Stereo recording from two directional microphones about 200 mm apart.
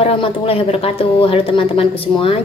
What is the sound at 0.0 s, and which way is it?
A woman's voice, 30° left (ahead or behind).